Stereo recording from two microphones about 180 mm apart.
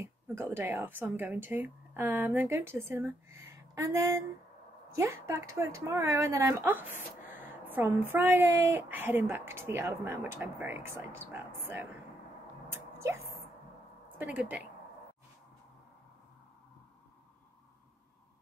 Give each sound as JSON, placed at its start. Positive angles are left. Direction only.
{"t": 0.0, "sound": "a woman's voice", "side_deg": -15}
{"t": 12.7, "sound": "a sound", "side_deg": -15}
{"t": 14.1, "sound": "a woman's voice", "side_deg": -5}